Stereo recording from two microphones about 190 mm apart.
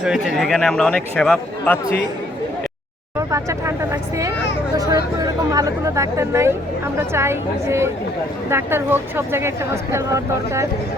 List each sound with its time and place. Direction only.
0.0 s speech: centre (ahead or behind)
3.2 s speech: 15° right (ahead or behind)
4.8 s speech: 20° right (ahead or behind)